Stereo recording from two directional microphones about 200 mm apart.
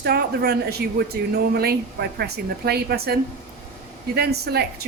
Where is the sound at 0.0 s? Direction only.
50° right (ahead or behind).